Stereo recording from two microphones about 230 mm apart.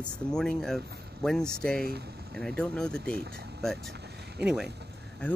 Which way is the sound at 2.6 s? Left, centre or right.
Centre.